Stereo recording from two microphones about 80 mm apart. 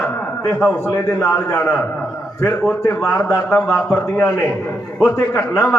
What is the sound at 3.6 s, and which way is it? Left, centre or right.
A man's voice, left.